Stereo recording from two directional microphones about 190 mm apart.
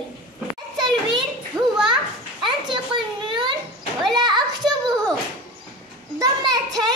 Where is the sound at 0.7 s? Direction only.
25° right (ahead or behind).